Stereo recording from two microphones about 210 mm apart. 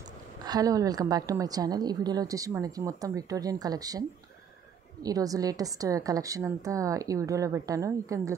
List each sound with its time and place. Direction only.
0.4 s a woman's voice: 20° right (ahead or behind)
5.0 s a woman's voice: 15° right (ahead or behind)